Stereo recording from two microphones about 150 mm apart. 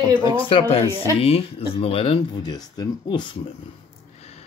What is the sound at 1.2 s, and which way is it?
Speech, 40° left (ahead or behind).